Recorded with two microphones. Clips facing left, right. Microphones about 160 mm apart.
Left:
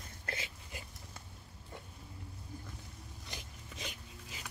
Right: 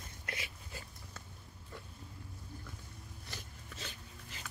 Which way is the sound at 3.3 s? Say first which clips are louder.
Left 1 dB; 15° left (ahead or behind).